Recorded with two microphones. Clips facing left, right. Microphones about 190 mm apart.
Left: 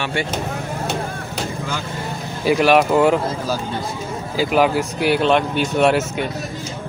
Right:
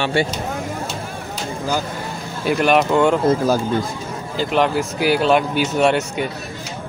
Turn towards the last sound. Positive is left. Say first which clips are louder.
# left 1 dB
turn(degrees=0)  # may be behind; listen again after turning